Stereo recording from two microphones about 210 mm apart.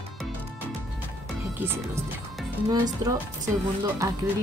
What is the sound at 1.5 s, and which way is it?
Speech, 10° right (ahead or behind).